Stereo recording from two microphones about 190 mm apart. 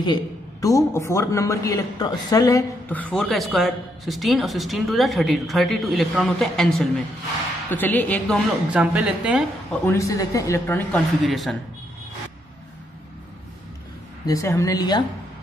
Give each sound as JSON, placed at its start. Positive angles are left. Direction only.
{"t": 0.0, "sound": "a man's voice", "side_deg": 20}
{"t": 8.7, "sound": "a woman's voice", "side_deg": -5}
{"t": 9.8, "sound": "speech", "side_deg": 15}
{"t": 14.2, "sound": "a woman's voice", "side_deg": 15}